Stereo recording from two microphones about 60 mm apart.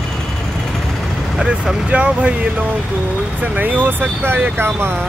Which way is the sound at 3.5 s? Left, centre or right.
Right.